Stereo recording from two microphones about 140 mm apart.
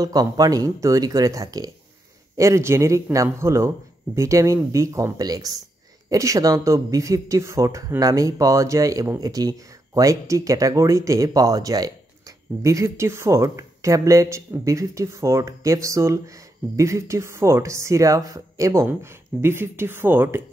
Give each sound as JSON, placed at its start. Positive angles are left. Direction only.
{"t": 0.0, "sound": "speech", "side_deg": -25}